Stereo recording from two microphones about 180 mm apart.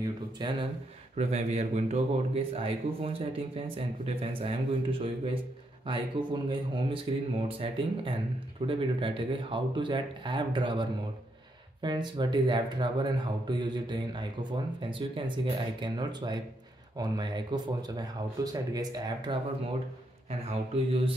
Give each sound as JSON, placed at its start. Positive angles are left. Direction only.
{"t": 0.0, "sound": "speech", "side_deg": -25}
{"t": 1.1, "sound": "speech", "side_deg": -35}
{"t": 20.2, "sound": "speech", "side_deg": -30}